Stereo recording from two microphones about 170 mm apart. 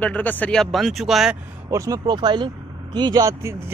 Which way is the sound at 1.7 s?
20° right (ahead or behind).